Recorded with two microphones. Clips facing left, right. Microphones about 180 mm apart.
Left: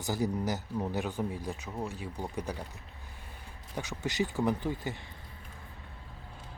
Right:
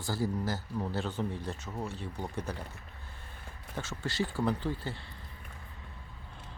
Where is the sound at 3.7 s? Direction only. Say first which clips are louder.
Left 2 dB; 15° left (ahead or behind).